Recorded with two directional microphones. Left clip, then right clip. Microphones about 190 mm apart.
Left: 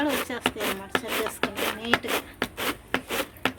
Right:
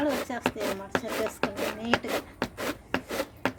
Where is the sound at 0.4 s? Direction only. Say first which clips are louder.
Left 2 dB; 15° left (ahead or behind).